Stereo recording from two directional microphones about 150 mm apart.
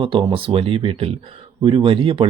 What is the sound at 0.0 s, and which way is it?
Speech, 35° right (ahead or behind).